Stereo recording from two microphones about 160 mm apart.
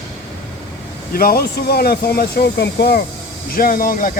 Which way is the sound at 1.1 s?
70° left (ahead or behind).